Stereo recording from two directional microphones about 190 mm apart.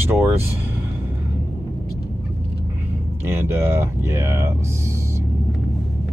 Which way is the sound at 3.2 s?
15° right (ahead or behind).